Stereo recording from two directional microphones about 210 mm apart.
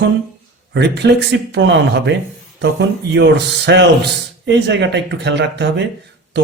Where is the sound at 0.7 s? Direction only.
55° right (ahead or behind).